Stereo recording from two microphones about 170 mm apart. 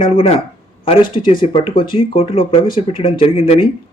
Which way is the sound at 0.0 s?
30° left (ahead or behind).